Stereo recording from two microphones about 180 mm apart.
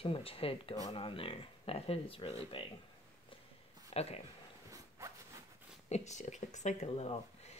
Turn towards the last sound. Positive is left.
turn(degrees=35)  # may be behind; listen again after turning